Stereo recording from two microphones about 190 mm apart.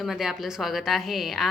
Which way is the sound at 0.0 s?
Centre (ahead or behind).